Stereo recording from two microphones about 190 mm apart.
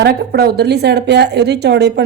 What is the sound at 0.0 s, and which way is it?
A woman's voice, 55° right (ahead or behind).